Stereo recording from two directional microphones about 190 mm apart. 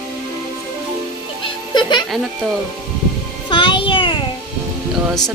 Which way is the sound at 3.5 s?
25° left (ahead or behind).